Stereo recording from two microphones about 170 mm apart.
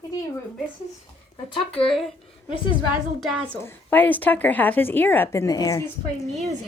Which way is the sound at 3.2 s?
5° right (ahead or behind).